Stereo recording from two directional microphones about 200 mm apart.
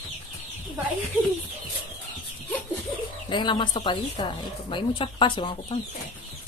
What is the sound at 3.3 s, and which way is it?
Speech, 25° left (ahead or behind).